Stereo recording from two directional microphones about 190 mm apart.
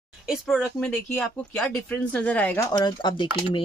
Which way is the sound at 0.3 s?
5° left (ahead or behind).